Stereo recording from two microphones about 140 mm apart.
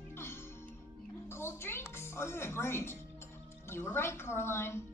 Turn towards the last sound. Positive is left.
turn(degrees=15)  # may be behind; listen again after turning